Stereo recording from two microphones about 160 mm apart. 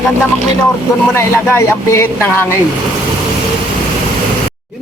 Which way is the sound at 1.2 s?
15° left (ahead or behind).